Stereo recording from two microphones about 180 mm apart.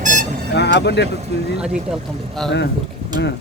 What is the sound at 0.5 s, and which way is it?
Speech, 70° left (ahead or behind).